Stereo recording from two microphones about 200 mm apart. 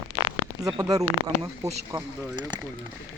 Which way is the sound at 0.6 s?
20° right (ahead or behind).